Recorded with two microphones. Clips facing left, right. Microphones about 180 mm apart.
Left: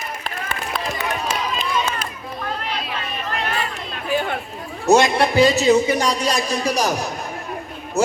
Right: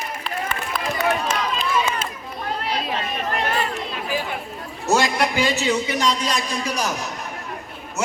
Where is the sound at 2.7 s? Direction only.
35° right (ahead or behind).